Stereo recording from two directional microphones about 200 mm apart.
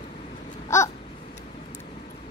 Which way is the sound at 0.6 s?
15° left (ahead or behind).